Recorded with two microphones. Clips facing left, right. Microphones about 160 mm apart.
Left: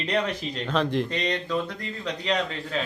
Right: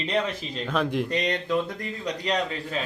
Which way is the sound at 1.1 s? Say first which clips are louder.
Right 2 dB; 45° right (ahead or behind).